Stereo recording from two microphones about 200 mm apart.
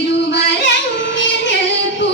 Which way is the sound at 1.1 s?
60° left (ahead or behind).